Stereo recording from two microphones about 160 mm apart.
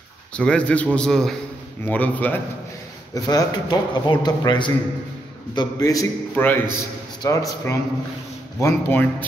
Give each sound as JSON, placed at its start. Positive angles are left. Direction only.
{"t": 0.4, "sound": "a man's voice", "side_deg": 5}
{"t": 3.2, "sound": "a man's voice", "side_deg": 25}